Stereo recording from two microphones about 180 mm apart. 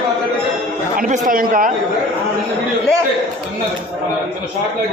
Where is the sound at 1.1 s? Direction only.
50° right (ahead or behind).